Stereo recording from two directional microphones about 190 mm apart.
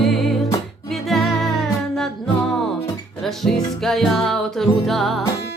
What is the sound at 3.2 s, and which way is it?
Music, centre (ahead or behind).